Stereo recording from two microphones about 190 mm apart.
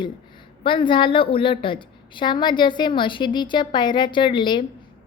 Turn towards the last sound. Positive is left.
turn(degrees=25)  # may be behind; listen again after turning